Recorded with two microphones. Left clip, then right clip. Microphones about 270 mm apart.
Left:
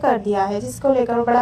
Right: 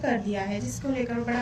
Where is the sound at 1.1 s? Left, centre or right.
Left.